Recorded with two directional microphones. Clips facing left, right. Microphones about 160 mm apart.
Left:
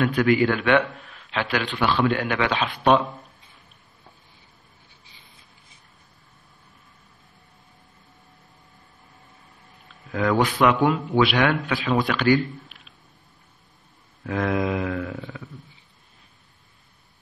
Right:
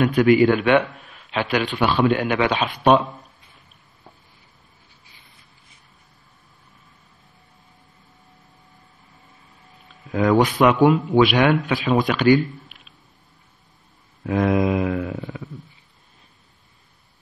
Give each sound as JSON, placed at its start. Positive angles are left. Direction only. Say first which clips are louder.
{"t": 0.0, "sound": "a man's voice", "louder": "right 4 dB", "side_deg": -15}
{"t": 10.1, "sound": "a man's voice", "louder": "right 4 dB", "side_deg": -20}
{"t": 14.2, "sound": "a sound", "louder": "right 5 dB", "side_deg": -20}